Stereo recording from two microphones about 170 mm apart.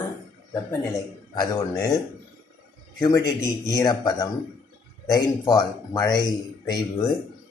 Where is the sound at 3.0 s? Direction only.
20° left (ahead or behind).